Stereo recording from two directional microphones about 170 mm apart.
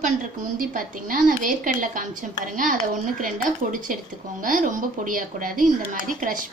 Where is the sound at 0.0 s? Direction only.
55° right (ahead or behind).